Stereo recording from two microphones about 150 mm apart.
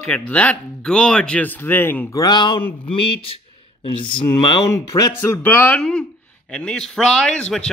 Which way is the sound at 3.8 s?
35° left (ahead or behind).